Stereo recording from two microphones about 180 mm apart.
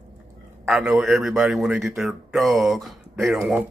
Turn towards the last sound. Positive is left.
turn(degrees=0)  # may be behind; listen again after turning